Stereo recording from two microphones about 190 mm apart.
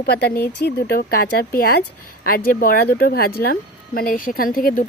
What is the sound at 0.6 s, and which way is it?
Speech, 55° left (ahead or behind).